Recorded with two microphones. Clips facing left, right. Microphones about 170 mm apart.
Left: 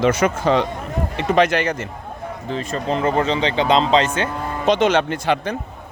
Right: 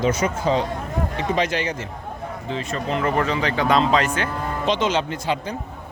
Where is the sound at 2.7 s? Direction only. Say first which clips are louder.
Left 3 dB; 35° left (ahead or behind).